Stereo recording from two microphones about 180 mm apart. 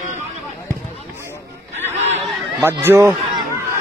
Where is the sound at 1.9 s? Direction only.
40° right (ahead or behind).